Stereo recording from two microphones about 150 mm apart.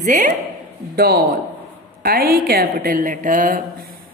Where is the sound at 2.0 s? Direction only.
75° right (ahead or behind); by 3.6 s 60° right (ahead or behind).